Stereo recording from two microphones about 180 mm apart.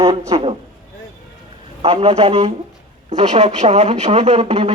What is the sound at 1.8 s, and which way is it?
Speech, 35° right (ahead or behind).